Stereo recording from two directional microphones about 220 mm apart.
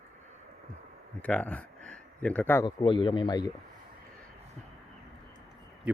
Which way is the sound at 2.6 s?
20° left (ahead or behind).